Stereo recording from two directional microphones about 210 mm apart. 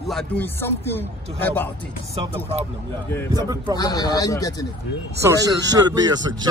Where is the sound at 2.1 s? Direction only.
30° right (ahead or behind).